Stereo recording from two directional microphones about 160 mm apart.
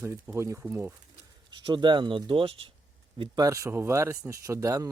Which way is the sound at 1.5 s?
30° right (ahead or behind).